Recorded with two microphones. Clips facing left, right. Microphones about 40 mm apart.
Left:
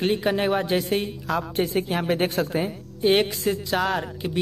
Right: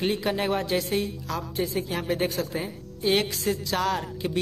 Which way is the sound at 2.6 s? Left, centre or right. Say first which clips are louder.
Left 7 dB; left.